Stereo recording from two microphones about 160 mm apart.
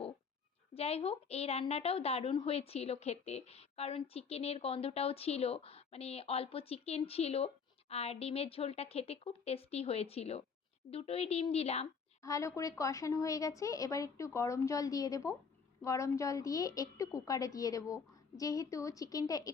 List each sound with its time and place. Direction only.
0.7 s a woman's voice: 40° left (ahead or behind)
12.2 s a woman's voice: 20° left (ahead or behind)